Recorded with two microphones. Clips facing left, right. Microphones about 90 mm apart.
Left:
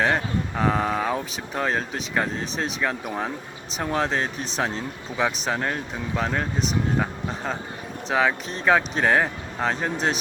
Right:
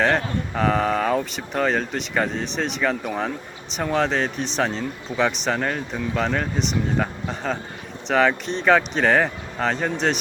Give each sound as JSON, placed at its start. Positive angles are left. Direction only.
{"t": 0.0, "sound": "speech", "side_deg": 5}